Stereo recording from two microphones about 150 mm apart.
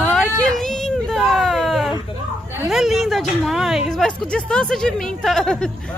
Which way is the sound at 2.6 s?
Centre (ahead or behind).